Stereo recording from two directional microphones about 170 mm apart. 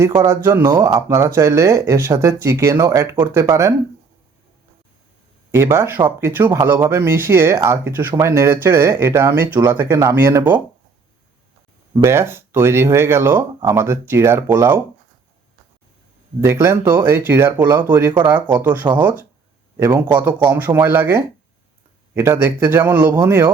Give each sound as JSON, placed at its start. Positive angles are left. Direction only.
{"t": 0.0, "sound": "speech", "side_deg": -15}
{"t": 5.5, "sound": "speech", "side_deg": -15}
{"t": 11.9, "sound": "speech", "side_deg": -15}
{"t": 16.4, "sound": "speech", "side_deg": -15}